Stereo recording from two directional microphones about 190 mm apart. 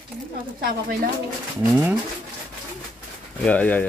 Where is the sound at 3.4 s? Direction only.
5° left (ahead or behind).